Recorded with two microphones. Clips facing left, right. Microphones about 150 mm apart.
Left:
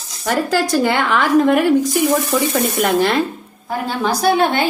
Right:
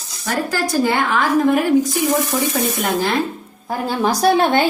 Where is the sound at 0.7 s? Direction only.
75° left (ahead or behind).